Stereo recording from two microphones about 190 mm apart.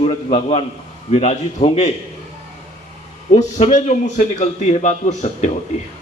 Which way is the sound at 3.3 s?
40° left (ahead or behind).